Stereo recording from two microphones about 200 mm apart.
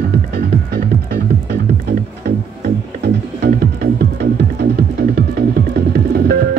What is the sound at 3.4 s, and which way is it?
Music, 55° right (ahead or behind).